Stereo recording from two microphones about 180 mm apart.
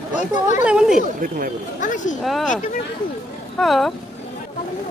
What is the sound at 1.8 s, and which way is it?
Speech, 45° left (ahead or behind).